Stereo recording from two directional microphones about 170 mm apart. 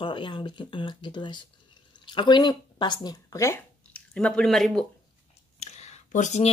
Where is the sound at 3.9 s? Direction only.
5° left (ahead or behind).